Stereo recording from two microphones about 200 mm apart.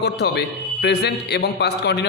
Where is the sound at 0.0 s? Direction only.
55° left (ahead or behind).